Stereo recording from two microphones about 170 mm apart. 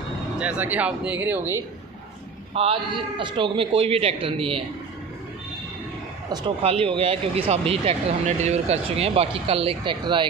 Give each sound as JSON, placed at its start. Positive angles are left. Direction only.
{"t": 0.4, "sound": "speech", "side_deg": -10}
{"t": 2.5, "sound": "speech", "side_deg": -35}
{"t": 6.3, "sound": "speech", "side_deg": -30}